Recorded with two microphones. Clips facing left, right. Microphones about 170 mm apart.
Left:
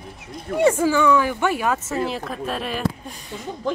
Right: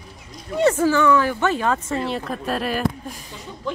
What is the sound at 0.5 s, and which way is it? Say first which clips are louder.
Speech: even; 10° left (ahead or behind).